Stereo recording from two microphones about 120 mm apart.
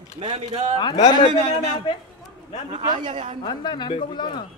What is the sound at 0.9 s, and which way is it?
Speech, 80° left.